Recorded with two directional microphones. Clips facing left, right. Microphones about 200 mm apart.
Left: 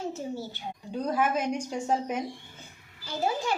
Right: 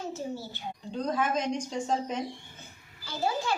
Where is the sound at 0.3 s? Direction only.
10° left (ahead or behind).